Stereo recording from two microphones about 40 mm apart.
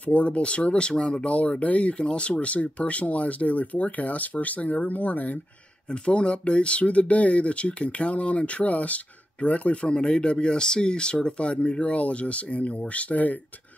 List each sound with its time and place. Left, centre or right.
0.0 s speech: left
5.9 s speech: left